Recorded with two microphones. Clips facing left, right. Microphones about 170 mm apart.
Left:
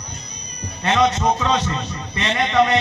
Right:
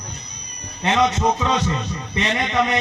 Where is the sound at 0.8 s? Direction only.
20° right (ahead or behind).